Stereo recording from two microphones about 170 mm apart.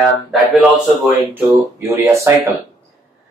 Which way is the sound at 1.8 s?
15° right (ahead or behind).